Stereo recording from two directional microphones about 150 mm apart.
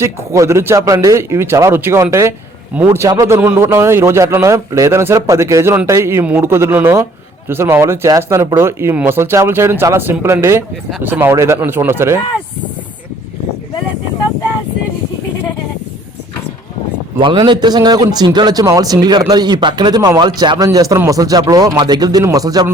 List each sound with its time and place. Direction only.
0.0 s a man's voice: 20° right (ahead or behind)
17.2 s a man's voice: 35° right (ahead or behind)